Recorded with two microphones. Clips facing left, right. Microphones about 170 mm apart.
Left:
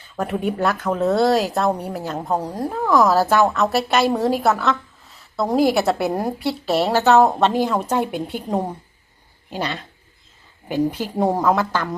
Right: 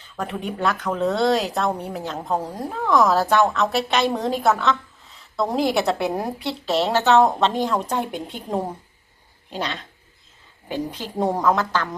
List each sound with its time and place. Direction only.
0.2 s a woman's voice: 5° left (ahead or behind)